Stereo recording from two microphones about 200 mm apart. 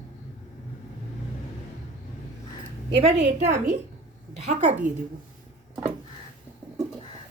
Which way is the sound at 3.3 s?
40° right (ahead or behind).